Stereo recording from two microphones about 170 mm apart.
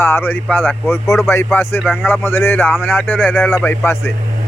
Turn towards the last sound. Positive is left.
turn(degrees=15)  # may be behind; listen again after turning